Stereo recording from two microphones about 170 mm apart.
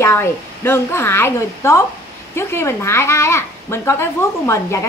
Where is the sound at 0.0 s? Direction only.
15° left (ahead or behind).